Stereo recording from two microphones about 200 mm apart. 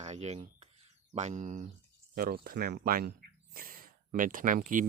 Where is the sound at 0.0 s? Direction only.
35° right (ahead or behind).